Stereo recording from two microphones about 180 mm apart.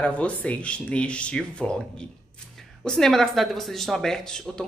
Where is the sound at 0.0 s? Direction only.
10° left (ahead or behind).